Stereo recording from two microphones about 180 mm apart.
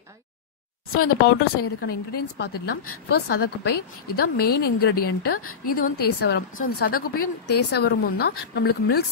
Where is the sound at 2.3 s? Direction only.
65° left (ahead or behind).